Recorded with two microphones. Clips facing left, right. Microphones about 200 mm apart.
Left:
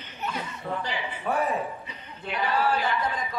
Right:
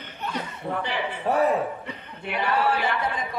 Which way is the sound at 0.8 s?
60° right (ahead or behind).